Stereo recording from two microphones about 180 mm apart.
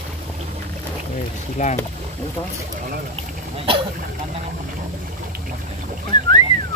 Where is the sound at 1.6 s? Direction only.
45° left (ahead or behind).